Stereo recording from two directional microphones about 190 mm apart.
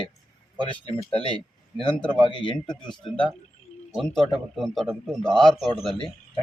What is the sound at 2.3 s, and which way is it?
Speech, 25° left (ahead or behind).